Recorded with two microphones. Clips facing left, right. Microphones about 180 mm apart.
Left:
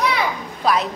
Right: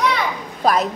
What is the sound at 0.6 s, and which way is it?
Speech, 45° right (ahead or behind).